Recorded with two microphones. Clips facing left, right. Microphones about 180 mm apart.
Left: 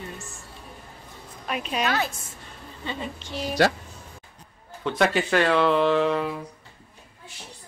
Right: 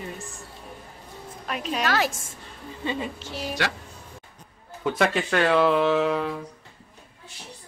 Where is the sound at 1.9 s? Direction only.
90° right.